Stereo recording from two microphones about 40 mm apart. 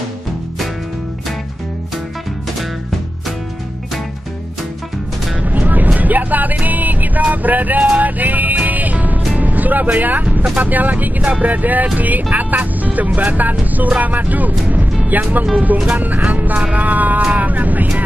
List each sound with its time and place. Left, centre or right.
5.4 s vehicle: right
8.0 s music: right
10.5 s speech: right
17.4 s vehicle: right